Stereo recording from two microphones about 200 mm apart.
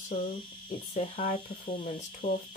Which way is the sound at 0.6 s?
30° left (ahead or behind).